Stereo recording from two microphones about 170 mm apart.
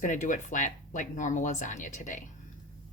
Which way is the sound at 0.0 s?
50° left (ahead or behind).